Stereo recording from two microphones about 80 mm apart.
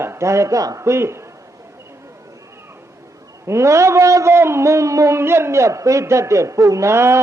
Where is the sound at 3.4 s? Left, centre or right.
Right.